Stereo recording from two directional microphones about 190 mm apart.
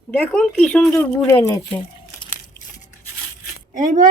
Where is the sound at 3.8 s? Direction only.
40° right (ahead or behind).